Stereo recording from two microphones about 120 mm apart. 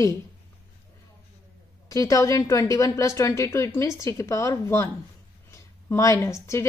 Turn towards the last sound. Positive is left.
turn(degrees=25)  # may be behind; listen again after turning